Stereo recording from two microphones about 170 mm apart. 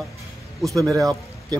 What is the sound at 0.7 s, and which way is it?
Speech, 20° right (ahead or behind).